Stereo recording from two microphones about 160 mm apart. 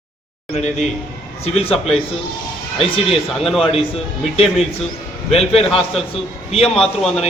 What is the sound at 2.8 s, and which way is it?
Speech, 35° left (ahead or behind).